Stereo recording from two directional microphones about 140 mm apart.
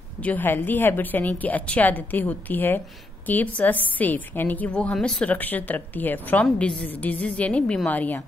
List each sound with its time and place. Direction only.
0.2 s a woman's voice: 10° left (ahead or behind)